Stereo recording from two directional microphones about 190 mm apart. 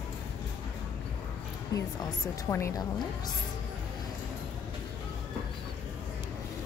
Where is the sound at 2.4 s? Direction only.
15° left (ahead or behind).